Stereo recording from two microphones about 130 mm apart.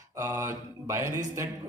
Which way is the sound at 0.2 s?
25° right (ahead or behind).